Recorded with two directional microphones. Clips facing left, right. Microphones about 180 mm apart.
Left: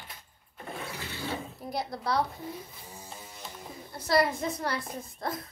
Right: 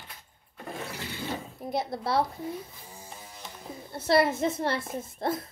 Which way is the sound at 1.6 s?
25° right (ahead or behind).